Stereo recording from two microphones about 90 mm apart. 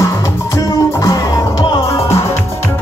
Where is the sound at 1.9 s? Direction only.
30° left (ahead or behind).